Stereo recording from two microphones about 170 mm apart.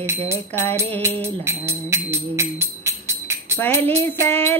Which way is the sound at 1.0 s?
15° right (ahead or behind).